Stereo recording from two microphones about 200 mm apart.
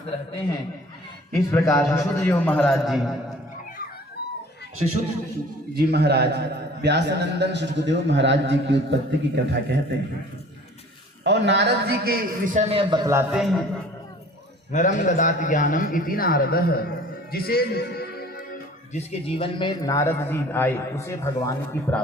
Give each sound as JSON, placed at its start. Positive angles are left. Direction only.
{"t": 1.3, "sound": "a man's voice", "side_deg": 15}
{"t": 5.7, "sound": "a man's voice", "side_deg": -55}
{"t": 11.2, "sound": "a man's voice", "side_deg": -60}
{"t": 12.5, "sound": "a man's voice", "side_deg": -30}
{"t": 13.3, "sound": "a man's voice", "side_deg": 0}
{"t": 14.7, "sound": "a man's voice", "side_deg": 40}
{"t": 17.3, "sound": "music", "side_deg": 50}
{"t": 18.9, "sound": "a man's voice", "side_deg": 30}